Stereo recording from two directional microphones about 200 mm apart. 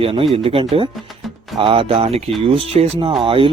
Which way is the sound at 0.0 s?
30° right (ahead or behind).